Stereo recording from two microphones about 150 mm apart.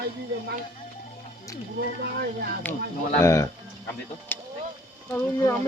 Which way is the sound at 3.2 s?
20° left (ahead or behind).